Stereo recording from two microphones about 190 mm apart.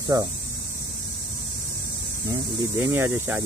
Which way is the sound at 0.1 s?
20° right (ahead or behind).